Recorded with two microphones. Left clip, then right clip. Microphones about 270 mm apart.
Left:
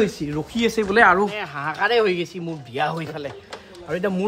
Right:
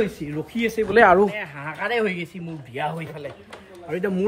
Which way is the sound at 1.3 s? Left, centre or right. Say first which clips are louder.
Left 4 dB; centre.